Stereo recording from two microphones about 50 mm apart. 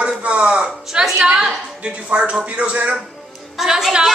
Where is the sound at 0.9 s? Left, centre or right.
Centre; by 3.0 s right.